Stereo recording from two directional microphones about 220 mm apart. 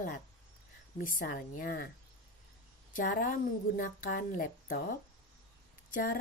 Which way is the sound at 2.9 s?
40° left (ahead or behind).